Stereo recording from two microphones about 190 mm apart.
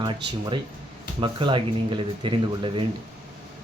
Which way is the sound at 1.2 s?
25° right (ahead or behind).